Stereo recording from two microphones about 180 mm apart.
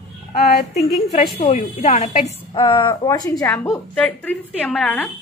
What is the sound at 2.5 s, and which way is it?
A woman's voice, 25° left (ahead or behind).